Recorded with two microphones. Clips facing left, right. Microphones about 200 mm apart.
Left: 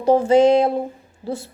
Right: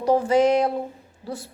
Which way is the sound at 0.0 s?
25° left (ahead or behind).